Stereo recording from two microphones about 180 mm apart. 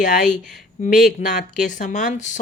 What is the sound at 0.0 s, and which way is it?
Speech, 45° left (ahead or behind).